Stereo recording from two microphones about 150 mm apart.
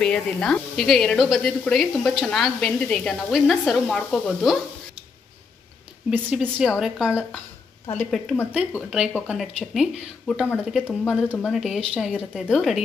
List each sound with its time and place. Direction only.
0.0 s a woman's voice: 5° left (ahead or behind)
6.0 s a woman's voice: 5° right (ahead or behind)